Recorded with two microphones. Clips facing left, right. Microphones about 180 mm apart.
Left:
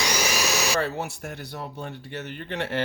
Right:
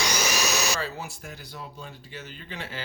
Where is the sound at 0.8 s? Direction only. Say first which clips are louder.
Left 6 dB; 65° left (ahead or behind).